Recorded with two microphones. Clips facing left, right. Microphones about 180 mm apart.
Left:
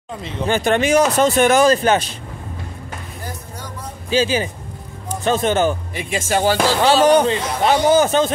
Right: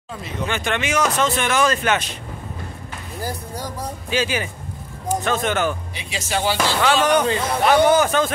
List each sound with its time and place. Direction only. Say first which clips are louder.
0.2 s speech: left 6 dB; 35° left (ahead or behind)
3.2 s music: right 8 dB; 35° right (ahead or behind)
4.1 s speech: left 5 dB; 30° left (ahead or behind)
5.9 s speech: left 5 dB; 50° left (ahead or behind); by 8.3 s 30° left (ahead or behind)